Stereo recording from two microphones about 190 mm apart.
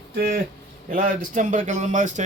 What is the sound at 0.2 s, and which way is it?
A man's voice, 50° right (ahead or behind).